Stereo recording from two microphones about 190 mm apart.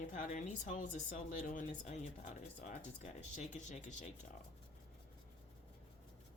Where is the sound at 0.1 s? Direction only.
40° left (ahead or behind).